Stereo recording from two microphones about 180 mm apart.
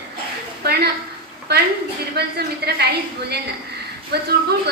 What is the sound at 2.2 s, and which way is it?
Speech, 65° right (ahead or behind).